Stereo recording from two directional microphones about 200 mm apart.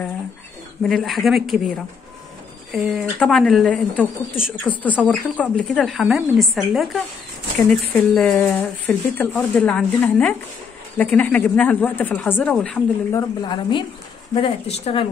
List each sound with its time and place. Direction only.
0.8 s speech: centre (ahead or behind)
2.7 s speech: centre (ahead or behind)
13.4 s speech: 25° left (ahead or behind)